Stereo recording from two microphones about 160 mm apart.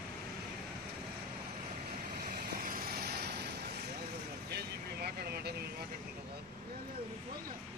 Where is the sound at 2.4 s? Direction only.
65° right (ahead or behind); by 3.4 s 90° right.